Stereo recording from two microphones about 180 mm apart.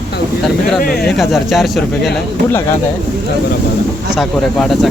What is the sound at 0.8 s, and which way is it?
Speech, 55° left (ahead or behind).